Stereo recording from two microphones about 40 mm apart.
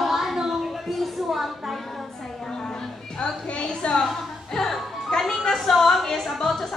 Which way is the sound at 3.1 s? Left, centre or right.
Left.